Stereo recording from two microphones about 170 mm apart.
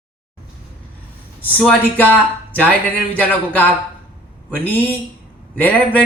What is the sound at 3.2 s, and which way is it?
Speech, 10° left (ahead or behind).